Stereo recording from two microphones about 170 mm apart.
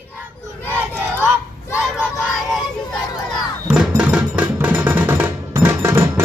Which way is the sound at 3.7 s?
5° right (ahead or behind).